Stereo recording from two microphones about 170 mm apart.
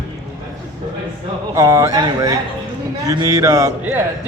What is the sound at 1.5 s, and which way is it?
A man's voice, 20° right (ahead or behind).